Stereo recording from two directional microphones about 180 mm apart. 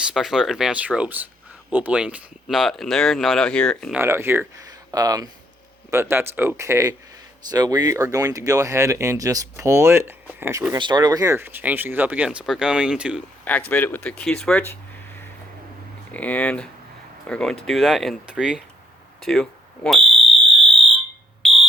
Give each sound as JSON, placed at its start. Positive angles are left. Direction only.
{"t": 0.0, "sound": "speech", "side_deg": 0}
{"t": 3.9, "sound": "speech", "side_deg": -15}
{"t": 10.8, "sound": "speech", "side_deg": -25}
{"t": 13.4, "sound": "speech", "side_deg": 10}
{"t": 21.4, "sound": "smoke detector", "side_deg": 0}